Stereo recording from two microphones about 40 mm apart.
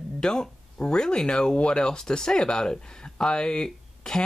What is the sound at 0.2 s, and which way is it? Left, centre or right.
Speech, centre.